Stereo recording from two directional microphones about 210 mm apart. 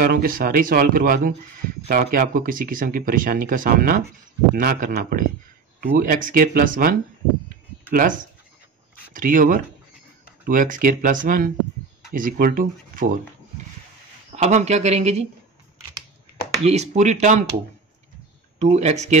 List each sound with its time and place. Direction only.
0.0 s speech: 45° right (ahead or behind)
14.3 s speech: 30° right (ahead or behind)
16.6 s speech: 30° right (ahead or behind)
18.6 s speech: 30° right (ahead or behind)